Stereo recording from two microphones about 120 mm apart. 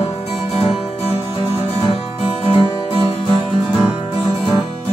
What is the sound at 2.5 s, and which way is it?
Music, 45° left (ahead or behind).